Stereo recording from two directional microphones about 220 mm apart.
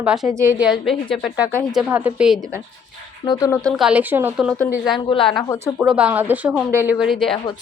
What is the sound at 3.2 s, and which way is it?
Speech, 15° left (ahead or behind).